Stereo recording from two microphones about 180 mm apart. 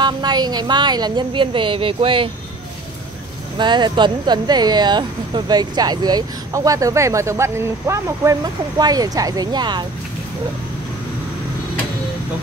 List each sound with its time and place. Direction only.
0.0 s speech: 25° right (ahead or behind)
3.5 s speech: 25° right (ahead or behind)